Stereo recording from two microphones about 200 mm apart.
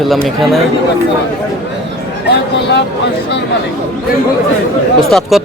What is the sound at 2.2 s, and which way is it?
Speech, 55° left (ahead or behind).